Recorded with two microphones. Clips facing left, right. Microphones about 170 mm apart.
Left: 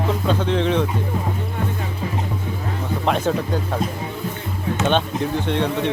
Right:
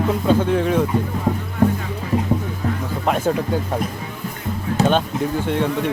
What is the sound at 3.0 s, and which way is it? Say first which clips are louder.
Speech: right 1 dB; 5° right (ahead or behind).